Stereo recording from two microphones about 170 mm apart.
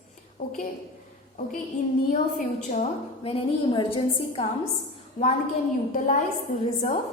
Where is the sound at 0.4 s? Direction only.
55° left (ahead or behind).